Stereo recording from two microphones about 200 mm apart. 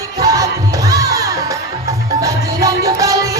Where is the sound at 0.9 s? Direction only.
15° right (ahead or behind).